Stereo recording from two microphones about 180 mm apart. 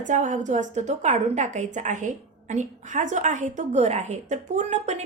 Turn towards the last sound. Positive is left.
turn(degrees=-40)  # may be behind; listen again after turning